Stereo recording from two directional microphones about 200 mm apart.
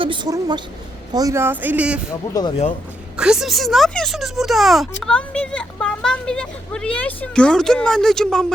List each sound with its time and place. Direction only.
0.0 s a woman's voice: 25° right (ahead or behind); by 2.0 s 5° right (ahead or behind)
2.3 s speech: 20° left (ahead or behind)
3.2 s speech: 5° right (ahead or behind)